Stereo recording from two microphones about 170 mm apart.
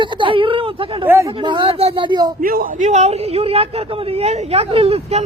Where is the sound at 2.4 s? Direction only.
55° right (ahead or behind).